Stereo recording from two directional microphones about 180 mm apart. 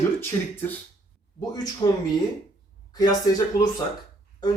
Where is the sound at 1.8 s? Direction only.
25° left (ahead or behind).